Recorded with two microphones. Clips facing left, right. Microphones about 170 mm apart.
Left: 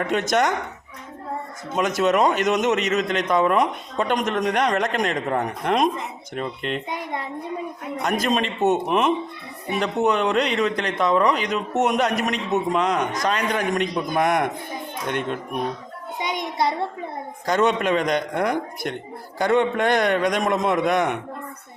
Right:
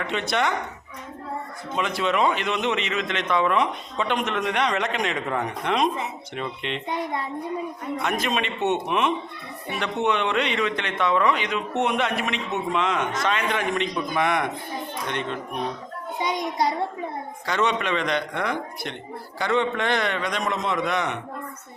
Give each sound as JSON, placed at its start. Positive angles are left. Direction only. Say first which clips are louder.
{"t": 0.0, "sound": "a man's voice", "louder": "left 4 dB", "side_deg": 45}
{"t": 1.7, "sound": "a man's voice", "louder": "left 5 dB", "side_deg": 45}
{"t": 8.0, "sound": "a man's voice", "louder": "left 4 dB", "side_deg": 40}
{"t": 17.4, "sound": "a man's voice", "louder": "left 5 dB", "side_deg": 45}